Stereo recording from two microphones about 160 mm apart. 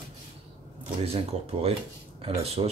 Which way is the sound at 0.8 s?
40° right (ahead or behind).